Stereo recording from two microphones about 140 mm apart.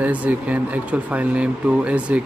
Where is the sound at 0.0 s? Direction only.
10° right (ahead or behind).